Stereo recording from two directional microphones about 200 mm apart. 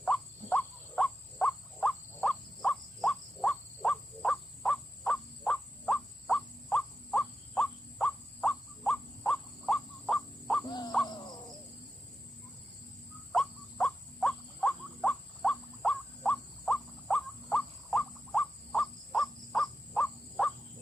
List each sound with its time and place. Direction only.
0.0 s wild animals: 5° left (ahead or behind)
10.7 s crow: 20° left (ahead or behind)
13.3 s a sound: centre (ahead or behind)